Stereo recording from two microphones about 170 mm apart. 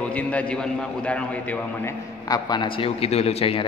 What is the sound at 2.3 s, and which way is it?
A man's voice, 25° left (ahead or behind).